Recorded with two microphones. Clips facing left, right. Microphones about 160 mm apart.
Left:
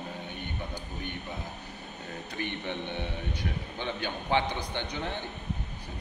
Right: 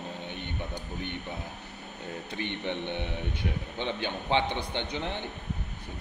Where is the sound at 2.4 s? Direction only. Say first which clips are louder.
Right 1 dB; 20° right (ahead or behind).